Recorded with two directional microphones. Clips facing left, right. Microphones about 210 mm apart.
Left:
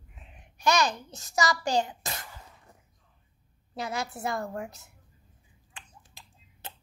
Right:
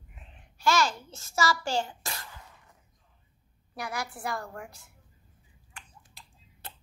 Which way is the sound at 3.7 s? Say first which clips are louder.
Left 3 dB; 25° left (ahead or behind).